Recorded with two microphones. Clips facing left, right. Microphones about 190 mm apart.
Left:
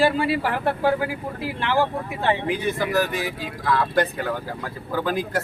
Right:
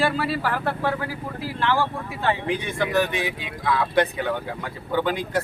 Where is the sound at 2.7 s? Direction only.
5° left (ahead or behind).